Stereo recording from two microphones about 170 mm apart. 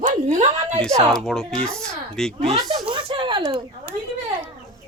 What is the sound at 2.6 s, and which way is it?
Speech, 20° right (ahead or behind).